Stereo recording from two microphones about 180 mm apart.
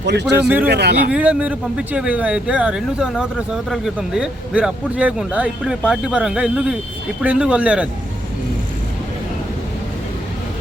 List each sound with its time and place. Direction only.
0.0 s speech: 70° right (ahead or behind)
0.4 s speech: 10° right (ahead or behind)
0.7 s speech: 65° right (ahead or behind)
1.1 s speech: 5° right (ahead or behind)